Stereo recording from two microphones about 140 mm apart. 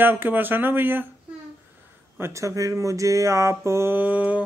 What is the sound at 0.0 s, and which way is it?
Speech, 15° right (ahead or behind).